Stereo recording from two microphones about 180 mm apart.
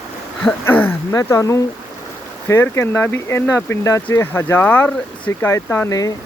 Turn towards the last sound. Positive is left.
turn(degrees=20)  # may be behind; listen again after turning